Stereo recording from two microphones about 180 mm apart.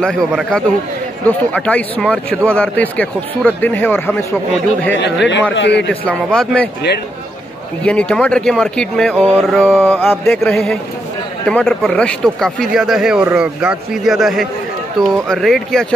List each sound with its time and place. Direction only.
0.0 s speech: 5° left (ahead or behind)
4.9 s a man's voice: 75° left (ahead or behind)
6.0 s speech: 5° left (ahead or behind)
7.8 s speech: 5° left (ahead or behind)